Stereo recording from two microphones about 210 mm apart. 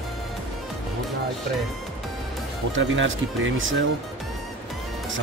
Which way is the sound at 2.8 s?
65° right (ahead or behind).